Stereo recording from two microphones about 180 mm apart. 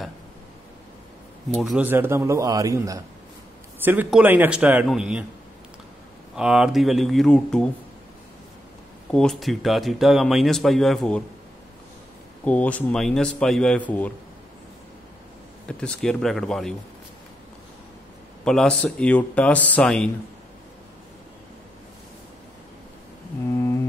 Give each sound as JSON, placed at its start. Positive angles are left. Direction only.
{"t": 1.6, "sound": "a man's voice", "side_deg": -5}
{"t": 6.3, "sound": "speech", "side_deg": -5}
{"t": 9.1, "sound": "speech", "side_deg": 5}
{"t": 12.4, "sound": "a man's voice", "side_deg": 10}
{"t": 15.8, "sound": "speech", "side_deg": 5}
{"t": 18.4, "sound": "a man's voice", "side_deg": 5}